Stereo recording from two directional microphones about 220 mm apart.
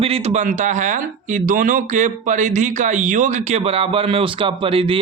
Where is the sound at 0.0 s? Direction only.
25° right (ahead or behind).